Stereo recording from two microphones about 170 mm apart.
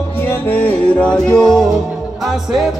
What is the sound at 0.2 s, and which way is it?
Music, 10° left (ahead or behind).